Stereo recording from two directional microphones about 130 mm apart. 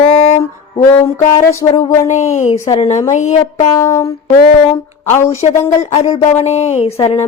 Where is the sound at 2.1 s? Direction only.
65° left (ahead or behind).